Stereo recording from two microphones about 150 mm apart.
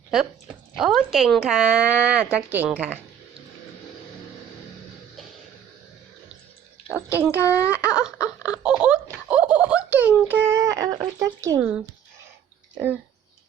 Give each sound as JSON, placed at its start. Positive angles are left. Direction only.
{"t": 0.8, "sound": "speech", "side_deg": 0}
{"t": 6.8, "sound": "speech", "side_deg": -10}
{"t": 7.3, "sound": "speech", "side_deg": 20}
{"t": 7.9, "sound": "speech", "side_deg": -5}
{"t": 8.6, "sound": "a sound", "side_deg": -5}
{"t": 10.2, "sound": "speech", "side_deg": -15}